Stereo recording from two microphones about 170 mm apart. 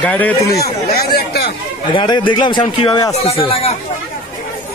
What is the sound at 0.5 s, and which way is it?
Chatter, 65° left (ahead or behind).